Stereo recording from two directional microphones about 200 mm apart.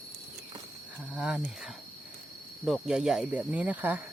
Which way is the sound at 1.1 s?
5° right (ahead or behind).